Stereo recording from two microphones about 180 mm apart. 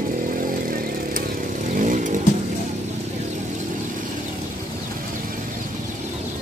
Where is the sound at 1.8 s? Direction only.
45° right (ahead or behind).